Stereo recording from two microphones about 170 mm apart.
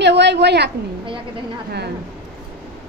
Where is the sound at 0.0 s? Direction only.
90° right.